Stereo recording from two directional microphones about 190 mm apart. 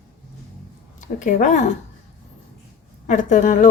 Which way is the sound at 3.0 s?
40° left (ahead or behind).